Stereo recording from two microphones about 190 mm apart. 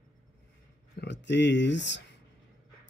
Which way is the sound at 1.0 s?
65° left (ahead or behind).